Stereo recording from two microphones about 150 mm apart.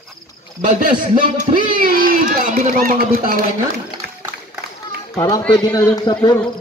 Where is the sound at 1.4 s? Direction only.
70° right (ahead or behind).